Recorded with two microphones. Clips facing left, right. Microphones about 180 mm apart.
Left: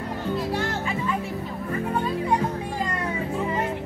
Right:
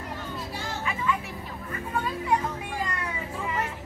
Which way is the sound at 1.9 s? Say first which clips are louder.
Left 3 dB; 35° left (ahead or behind).